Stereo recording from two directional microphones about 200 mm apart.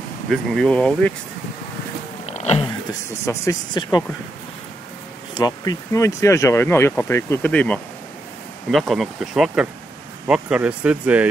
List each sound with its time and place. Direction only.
0.3 s speech: centre (ahead or behind)
2.2 s a sound: 35° left (ahead or behind)
3.3 s speech: 20° left (ahead or behind)
5.3 s speech: 20° left (ahead or behind); by 11.2 s 5° right (ahead or behind)